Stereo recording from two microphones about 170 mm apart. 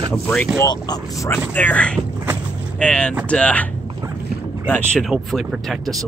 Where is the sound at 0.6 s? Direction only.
25° left (ahead or behind).